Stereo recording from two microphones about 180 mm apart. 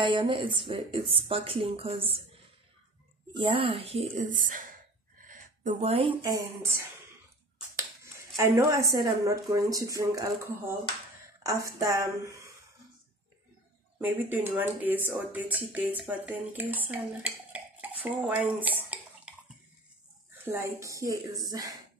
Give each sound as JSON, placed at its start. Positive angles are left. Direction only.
{"t": 0.0, "sound": "a woman's voice", "side_deg": -25}
{"t": 3.3, "sound": "speech", "side_deg": -30}
{"t": 6.2, "sound": "speech", "side_deg": -15}
{"t": 8.4, "sound": "speech", "side_deg": -15}
{"t": 11.4, "sound": "speech", "side_deg": -15}
{"t": 13.9, "sound": "speech", "side_deg": -10}
{"t": 20.4, "sound": "speech", "side_deg": -15}